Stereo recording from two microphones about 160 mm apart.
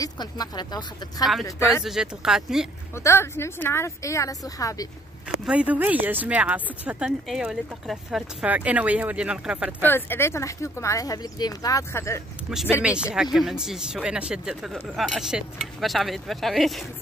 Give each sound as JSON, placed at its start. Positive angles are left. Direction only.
{"t": 0.0, "sound": "speech", "side_deg": 25}
{"t": 1.4, "sound": "speech", "side_deg": 15}
{"t": 1.9, "sound": "speech", "side_deg": -5}
{"t": 3.0, "sound": "speech", "side_deg": 15}
{"t": 5.4, "sound": "speech", "side_deg": -5}
{"t": 9.8, "sound": "speech", "side_deg": 15}
{"t": 12.8, "sound": "speech", "side_deg": -5}